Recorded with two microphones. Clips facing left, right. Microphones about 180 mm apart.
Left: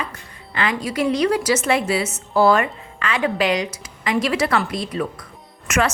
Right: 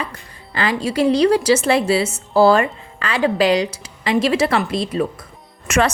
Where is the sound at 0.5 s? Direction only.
35° right (ahead or behind).